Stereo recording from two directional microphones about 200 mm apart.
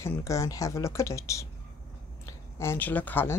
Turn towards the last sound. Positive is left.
turn(degrees=10)  # may be behind; listen again after turning